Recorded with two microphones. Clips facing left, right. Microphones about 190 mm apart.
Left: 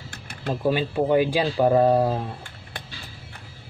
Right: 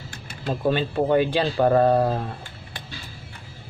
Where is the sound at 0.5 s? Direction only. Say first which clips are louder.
Even; 10° left (ahead or behind).